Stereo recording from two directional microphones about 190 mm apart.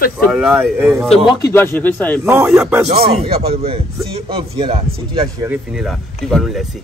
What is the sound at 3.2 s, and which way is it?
A man's voice, 30° right (ahead or behind).